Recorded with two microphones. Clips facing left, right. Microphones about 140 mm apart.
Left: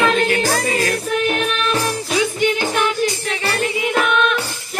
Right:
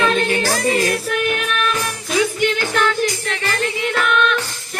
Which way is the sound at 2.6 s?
15° left (ahead or behind).